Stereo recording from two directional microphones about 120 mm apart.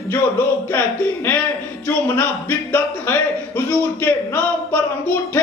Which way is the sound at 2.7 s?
15° left (ahead or behind).